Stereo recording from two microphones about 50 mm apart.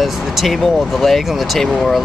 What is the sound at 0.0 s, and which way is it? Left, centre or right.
Speech, centre.